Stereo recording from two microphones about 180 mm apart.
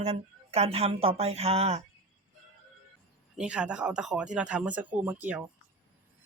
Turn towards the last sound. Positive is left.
turn(degrees=-10)  # may be behind; listen again after turning